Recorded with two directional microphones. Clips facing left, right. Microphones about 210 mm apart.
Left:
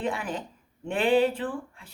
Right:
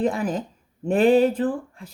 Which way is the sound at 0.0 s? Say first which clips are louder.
Right 7 dB; 40° right (ahead or behind).